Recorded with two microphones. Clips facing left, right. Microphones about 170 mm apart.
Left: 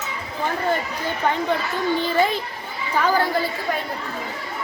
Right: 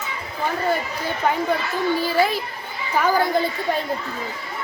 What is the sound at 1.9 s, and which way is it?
A child's voice, 5° right (ahead or behind).